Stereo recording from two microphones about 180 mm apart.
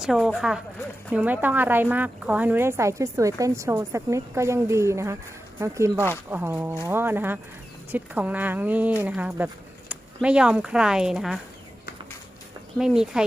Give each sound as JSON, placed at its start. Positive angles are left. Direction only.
{"t": 0.0, "sound": "a woman's voice", "side_deg": 0}
{"t": 12.8, "sound": "speech", "side_deg": -5}